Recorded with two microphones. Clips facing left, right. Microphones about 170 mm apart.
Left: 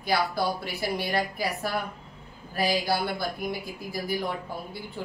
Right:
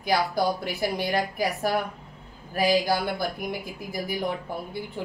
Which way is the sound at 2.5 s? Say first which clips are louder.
Right 4 dB; 20° right (ahead or behind).